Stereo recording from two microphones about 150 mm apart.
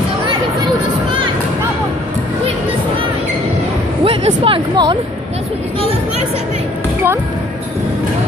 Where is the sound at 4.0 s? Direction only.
40° right (ahead or behind).